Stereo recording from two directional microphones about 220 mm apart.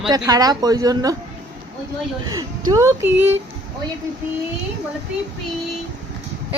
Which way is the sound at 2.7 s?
15° right (ahead or behind).